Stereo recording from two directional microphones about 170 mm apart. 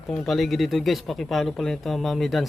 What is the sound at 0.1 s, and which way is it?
Speech, centre (ahead or behind).